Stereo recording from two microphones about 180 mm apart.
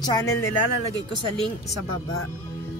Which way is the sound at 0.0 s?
20° left (ahead or behind).